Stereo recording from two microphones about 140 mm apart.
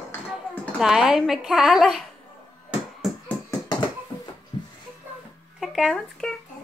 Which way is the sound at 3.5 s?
30° left (ahead or behind).